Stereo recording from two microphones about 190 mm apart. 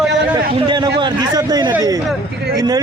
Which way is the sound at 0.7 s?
25° right (ahead or behind).